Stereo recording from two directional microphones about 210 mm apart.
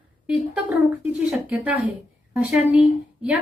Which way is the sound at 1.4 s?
5° right (ahead or behind).